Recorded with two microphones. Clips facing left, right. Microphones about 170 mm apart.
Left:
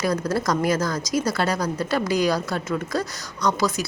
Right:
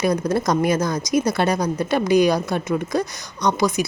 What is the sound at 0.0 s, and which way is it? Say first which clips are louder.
Speech: right 3 dB; 20° right (ahead or behind).